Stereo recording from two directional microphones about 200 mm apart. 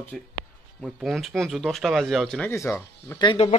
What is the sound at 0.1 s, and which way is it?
Speech, 5° left (ahead or behind).